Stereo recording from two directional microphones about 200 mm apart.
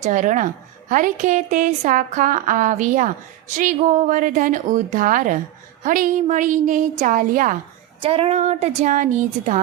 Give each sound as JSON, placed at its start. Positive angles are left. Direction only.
{"t": 0.0, "sound": "a woman's voice", "side_deg": -40}
{"t": 8.0, "sound": "a woman's voice", "side_deg": -30}